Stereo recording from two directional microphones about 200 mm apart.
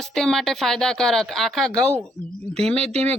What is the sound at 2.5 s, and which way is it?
Speech, 30° right (ahead or behind).